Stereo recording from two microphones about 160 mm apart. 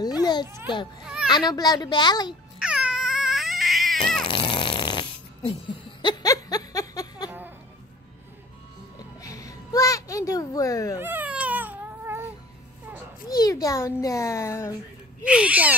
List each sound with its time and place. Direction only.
0.2 s children playing: 25° left (ahead or behind)
1.0 s baby cry: 5° right (ahead or behind)
1.3 s a child's voice: 25° left (ahead or behind)
2.6 s baby cry: 5° right (ahead or behind)
4.2 s snoring: 30° left (ahead or behind)
7.2 s goat: 10° right (ahead or behind)
9.2 s music: 20° left (ahead or behind)
11.0 s baby cry: 10° right (ahead or behind)
13.3 s a child's voice: 20° left (ahead or behind)
15.2 s speech: 5° right (ahead or behind)